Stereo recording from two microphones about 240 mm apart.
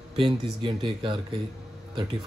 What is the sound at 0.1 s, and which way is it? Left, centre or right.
Speech, right.